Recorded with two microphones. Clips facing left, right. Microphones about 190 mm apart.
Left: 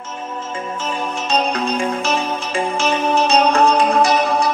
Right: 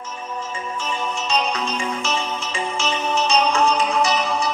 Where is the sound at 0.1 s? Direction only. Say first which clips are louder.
Left 4 dB; 50° left (ahead or behind).